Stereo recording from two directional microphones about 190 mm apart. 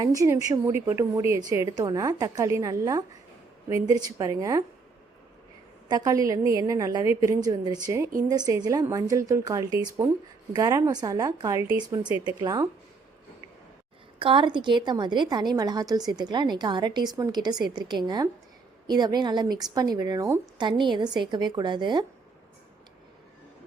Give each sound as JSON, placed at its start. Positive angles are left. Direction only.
{"t": 0.0, "sound": "a woman's voice", "side_deg": -15}
{"t": 5.9, "sound": "a woman's voice", "side_deg": -20}
{"t": 14.2, "sound": "a woman's voice", "side_deg": -25}